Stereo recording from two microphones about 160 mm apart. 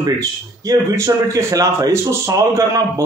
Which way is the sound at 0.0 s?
20° right (ahead or behind).